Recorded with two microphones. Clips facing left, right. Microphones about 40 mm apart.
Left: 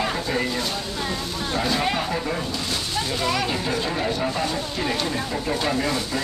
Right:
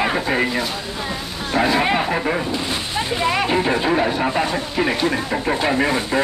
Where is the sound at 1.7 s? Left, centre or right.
Right.